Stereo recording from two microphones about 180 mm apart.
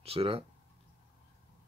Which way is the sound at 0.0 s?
35° right (ahead or behind).